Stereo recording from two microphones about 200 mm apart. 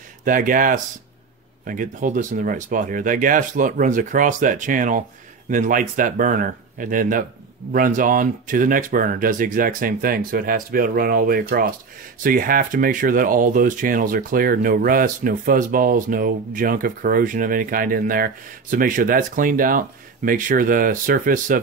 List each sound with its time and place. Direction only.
0.2 s speech: 40° right (ahead or behind)